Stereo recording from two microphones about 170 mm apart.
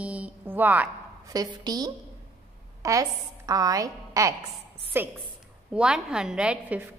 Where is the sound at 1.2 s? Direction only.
20° right (ahead or behind).